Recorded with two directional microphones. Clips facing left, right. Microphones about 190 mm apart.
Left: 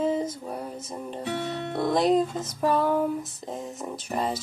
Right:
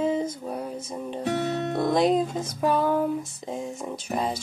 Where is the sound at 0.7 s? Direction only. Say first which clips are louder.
Right 3 dB; 5° right (ahead or behind).